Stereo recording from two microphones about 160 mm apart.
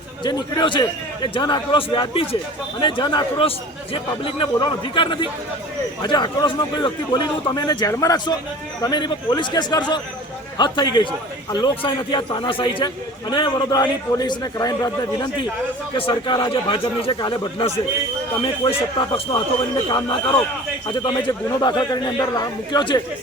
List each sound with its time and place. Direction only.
0.2 s a man's voice: 25° left (ahead or behind)